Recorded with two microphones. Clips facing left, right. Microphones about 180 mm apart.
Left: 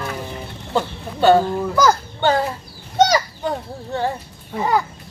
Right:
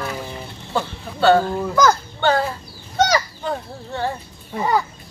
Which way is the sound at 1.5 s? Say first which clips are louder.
Even; 10° left (ahead or behind).